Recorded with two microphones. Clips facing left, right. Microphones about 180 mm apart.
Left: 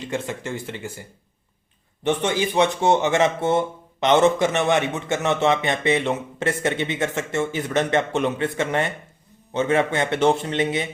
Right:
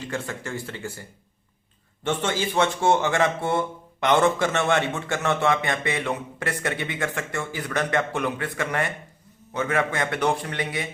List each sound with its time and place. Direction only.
0.0 s speech: 20° left (ahead or behind)
2.0 s speech: 15° left (ahead or behind)